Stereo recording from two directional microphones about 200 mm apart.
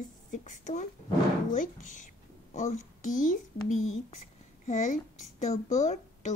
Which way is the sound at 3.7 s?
90° left.